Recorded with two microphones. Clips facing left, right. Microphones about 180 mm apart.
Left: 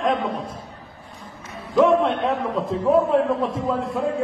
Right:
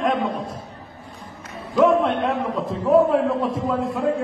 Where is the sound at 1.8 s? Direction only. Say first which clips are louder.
Even; centre (ahead or behind).